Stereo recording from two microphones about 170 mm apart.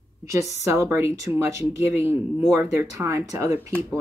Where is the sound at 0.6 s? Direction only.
15° right (ahead or behind).